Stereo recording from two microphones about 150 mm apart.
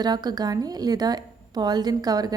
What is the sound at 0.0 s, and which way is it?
A woman's voice, 30° right (ahead or behind).